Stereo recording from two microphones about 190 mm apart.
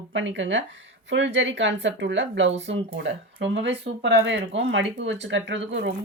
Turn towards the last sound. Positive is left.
turn(degrees=-70)  # may be behind; listen again after turning